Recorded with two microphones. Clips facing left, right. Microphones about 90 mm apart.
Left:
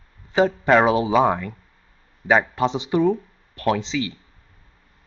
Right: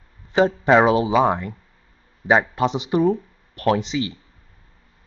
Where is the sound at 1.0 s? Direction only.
15° right (ahead or behind).